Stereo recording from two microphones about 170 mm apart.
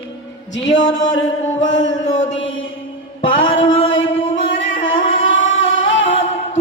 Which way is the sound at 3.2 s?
90° left.